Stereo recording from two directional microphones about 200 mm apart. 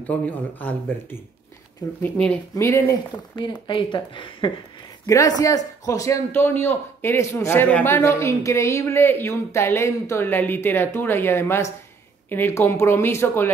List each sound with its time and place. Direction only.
0.0 s a man's voice: 10° left (ahead or behind)